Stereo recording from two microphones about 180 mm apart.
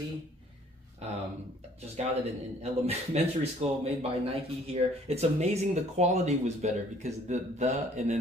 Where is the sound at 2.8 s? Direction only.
35° right (ahead or behind).